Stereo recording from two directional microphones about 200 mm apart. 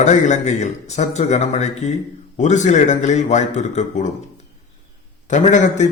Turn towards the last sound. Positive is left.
turn(degrees=35)  # may be behind; listen again after turning